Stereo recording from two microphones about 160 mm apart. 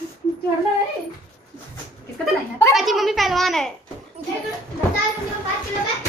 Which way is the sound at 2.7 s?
Centre (ahead or behind).